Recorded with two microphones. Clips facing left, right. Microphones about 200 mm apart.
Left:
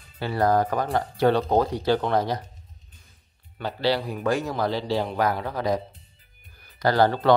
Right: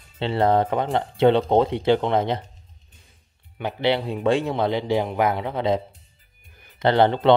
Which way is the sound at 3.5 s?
20° right (ahead or behind).